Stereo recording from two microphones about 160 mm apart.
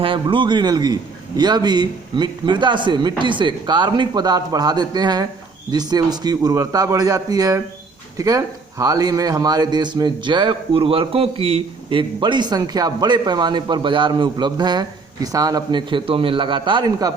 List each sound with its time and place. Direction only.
0.0 s speech: 35° right (ahead or behind)